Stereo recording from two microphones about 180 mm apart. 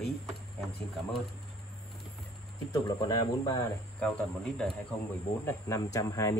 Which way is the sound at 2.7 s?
20° left (ahead or behind).